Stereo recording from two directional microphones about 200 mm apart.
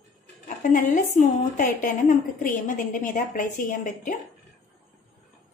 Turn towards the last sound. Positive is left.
turn(degrees=45)  # may be behind; listen again after turning